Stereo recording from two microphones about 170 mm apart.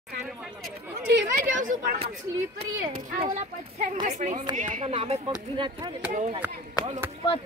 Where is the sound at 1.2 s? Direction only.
50° right (ahead or behind).